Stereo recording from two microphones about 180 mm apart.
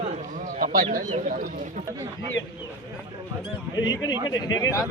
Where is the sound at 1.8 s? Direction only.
20° right (ahead or behind).